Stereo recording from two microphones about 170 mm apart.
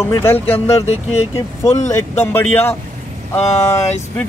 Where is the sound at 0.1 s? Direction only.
15° left (ahead or behind).